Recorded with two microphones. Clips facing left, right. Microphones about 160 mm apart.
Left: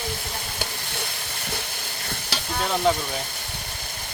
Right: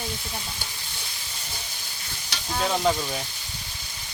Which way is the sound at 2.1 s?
65° left (ahead or behind).